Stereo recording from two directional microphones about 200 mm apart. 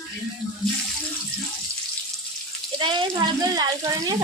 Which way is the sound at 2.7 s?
25° right (ahead or behind).